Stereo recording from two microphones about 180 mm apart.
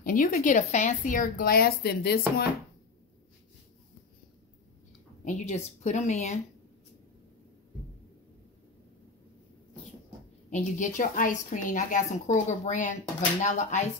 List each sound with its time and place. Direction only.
0.0 s speech: 50° left (ahead or behind)
5.2 s a woman's voice: 40° left (ahead or behind)
10.5 s speech: 45° left (ahead or behind)